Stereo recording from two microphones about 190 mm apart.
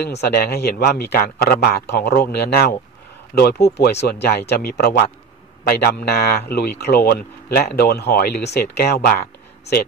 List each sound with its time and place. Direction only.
0.0 s a man's voice: 60° left (ahead or behind)